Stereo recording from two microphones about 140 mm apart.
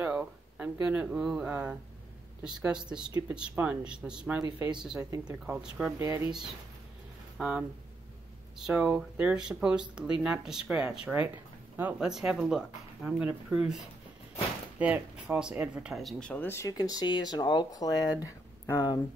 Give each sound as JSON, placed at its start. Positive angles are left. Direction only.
{"t": 0.0, "sound": "speech", "side_deg": -10}
{"t": 5.5, "sound": "speech", "side_deg": -5}
{"t": 5.9, "sound": "speech", "side_deg": -20}
{"t": 7.3, "sound": "speech", "side_deg": -5}
{"t": 12.1, "sound": "speech", "side_deg": -5}